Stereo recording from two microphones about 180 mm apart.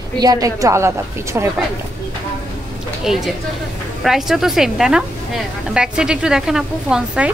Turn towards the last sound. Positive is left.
turn(degrees=-5)  # may be behind; listen again after turning